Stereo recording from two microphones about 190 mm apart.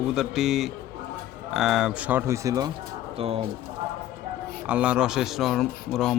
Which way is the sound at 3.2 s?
30° right (ahead or behind).